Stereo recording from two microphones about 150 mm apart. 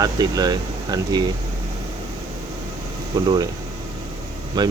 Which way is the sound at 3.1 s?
25° right (ahead or behind).